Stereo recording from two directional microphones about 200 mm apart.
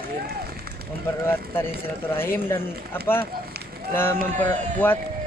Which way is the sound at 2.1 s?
10° left (ahead or behind).